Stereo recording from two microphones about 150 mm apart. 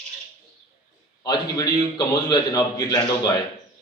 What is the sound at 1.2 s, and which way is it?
A man's voice, 25° left (ahead or behind).